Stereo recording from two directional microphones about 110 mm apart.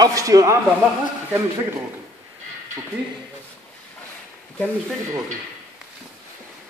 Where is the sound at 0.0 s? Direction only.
35° right (ahead or behind).